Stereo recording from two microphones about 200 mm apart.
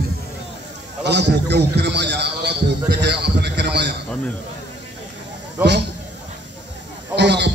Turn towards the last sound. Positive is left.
turn(degrees=-60)  # may be behind; listen again after turning